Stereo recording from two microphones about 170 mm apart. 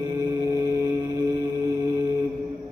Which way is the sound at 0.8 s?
10° right (ahead or behind).